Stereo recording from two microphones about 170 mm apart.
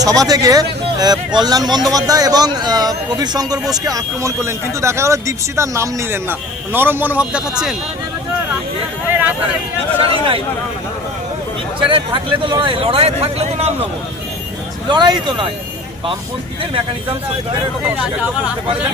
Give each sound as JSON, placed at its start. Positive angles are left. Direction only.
{"t": 0.0, "sound": "a man's voice", "side_deg": -20}
{"t": 10.0, "sound": "speech", "side_deg": -35}
{"t": 11.8, "sound": "speech", "side_deg": -30}
{"t": 14.8, "sound": "speech", "side_deg": -25}